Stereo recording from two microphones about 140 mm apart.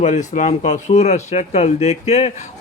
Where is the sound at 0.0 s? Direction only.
60° left (ahead or behind).